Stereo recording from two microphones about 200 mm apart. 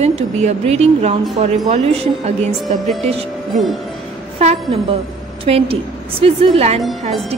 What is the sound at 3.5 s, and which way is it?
Speech, centre (ahead or behind).